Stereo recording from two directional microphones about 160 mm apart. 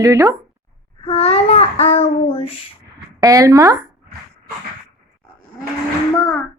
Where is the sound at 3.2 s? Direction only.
20° right (ahead or behind).